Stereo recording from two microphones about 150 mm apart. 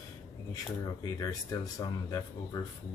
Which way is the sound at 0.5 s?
25° left (ahead or behind).